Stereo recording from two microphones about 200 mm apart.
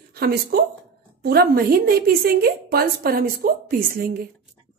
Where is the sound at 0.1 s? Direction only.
50° right (ahead or behind).